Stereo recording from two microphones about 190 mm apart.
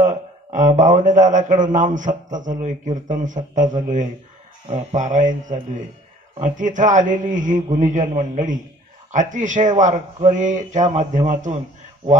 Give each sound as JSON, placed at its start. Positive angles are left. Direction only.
{"t": 0.0, "sound": "a man's voice", "side_deg": -40}